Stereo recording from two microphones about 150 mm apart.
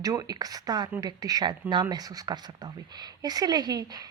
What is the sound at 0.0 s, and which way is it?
Speech, 25° right (ahead or behind).